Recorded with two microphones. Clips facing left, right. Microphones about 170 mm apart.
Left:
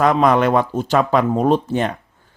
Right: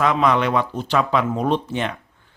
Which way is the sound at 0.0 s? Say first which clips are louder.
Left 4 dB; 45° left (ahead or behind).